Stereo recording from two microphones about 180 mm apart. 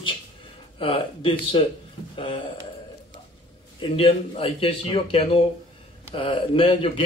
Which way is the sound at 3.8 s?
30° left (ahead or behind).